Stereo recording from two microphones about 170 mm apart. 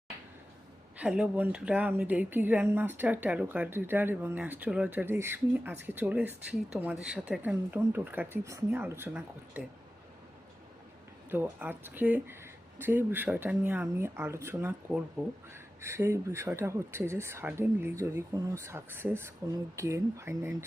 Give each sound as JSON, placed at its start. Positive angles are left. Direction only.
{"t": 0.9, "sound": "a woman's voice", "side_deg": -5}
{"t": 11.3, "sound": "a woman's voice", "side_deg": -10}